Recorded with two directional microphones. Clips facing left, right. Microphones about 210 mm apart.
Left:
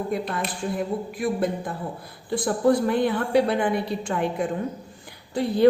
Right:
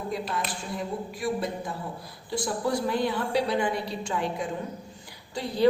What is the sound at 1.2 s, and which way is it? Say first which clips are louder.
A woman's voice: left 4 dB; 55° left (ahead or behind).